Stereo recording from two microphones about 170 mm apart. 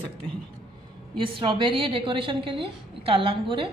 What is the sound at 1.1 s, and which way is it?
A woman's voice, 30° right (ahead or behind).